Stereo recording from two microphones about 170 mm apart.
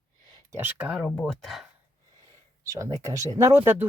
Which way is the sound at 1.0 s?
5° left (ahead or behind).